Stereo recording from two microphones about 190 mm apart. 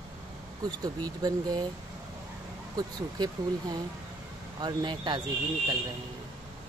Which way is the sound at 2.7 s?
20° right (ahead or behind).